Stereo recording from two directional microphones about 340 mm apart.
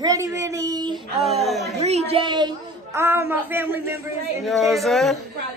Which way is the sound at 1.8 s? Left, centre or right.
Centre.